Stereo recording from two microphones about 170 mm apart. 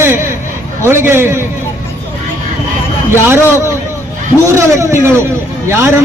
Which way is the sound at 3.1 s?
15° right (ahead or behind).